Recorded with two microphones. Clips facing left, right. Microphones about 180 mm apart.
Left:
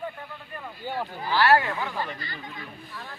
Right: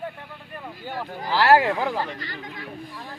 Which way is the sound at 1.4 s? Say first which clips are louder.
Right 4 dB; 90° right.